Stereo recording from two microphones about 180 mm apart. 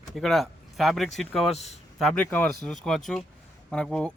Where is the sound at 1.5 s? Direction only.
35° left (ahead or behind).